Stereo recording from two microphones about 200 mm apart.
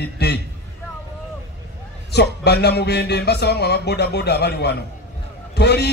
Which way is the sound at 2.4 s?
55° left (ahead or behind).